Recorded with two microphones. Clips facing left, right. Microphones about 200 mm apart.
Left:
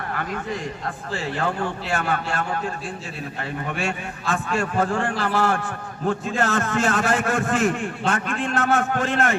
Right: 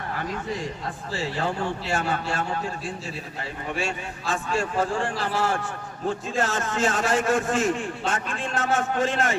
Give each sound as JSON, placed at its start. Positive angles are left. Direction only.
{"t": 1.4, "sound": "a man's voice", "side_deg": 60}
{"t": 3.8, "sound": "a man's voice", "side_deg": 60}